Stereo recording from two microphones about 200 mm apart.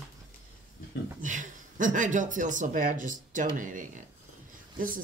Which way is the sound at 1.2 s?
40° right (ahead or behind).